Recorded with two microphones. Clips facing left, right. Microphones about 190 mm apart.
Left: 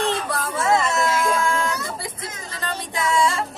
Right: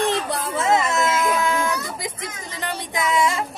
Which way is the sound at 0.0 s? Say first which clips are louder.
Right 1 dB; 20° right (ahead or behind).